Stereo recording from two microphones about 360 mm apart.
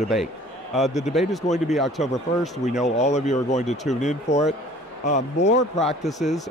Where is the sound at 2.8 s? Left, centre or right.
Centre.